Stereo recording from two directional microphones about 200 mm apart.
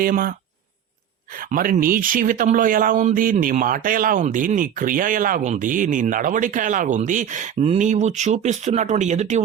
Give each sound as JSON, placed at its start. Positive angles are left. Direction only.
{"t": 0.0, "sound": "speech", "side_deg": -45}
{"t": 1.4, "sound": "speech", "side_deg": -45}